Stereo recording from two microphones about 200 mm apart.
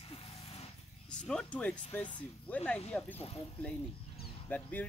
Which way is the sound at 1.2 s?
5° left (ahead or behind).